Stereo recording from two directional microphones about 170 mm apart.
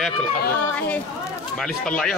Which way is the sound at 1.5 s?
5° left (ahead or behind).